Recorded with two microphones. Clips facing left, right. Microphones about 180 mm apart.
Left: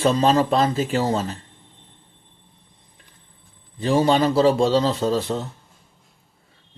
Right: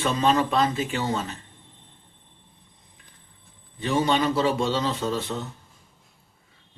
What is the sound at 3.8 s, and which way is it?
Speech, 35° left (ahead or behind).